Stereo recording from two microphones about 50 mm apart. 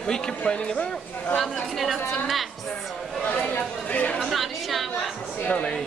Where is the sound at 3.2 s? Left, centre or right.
Left.